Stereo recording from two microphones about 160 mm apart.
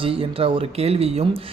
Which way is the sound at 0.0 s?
35° right (ahead or behind).